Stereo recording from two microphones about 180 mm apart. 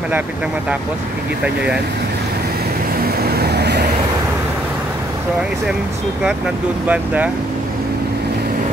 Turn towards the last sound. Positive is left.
turn(degrees=-10)  # may be behind; listen again after turning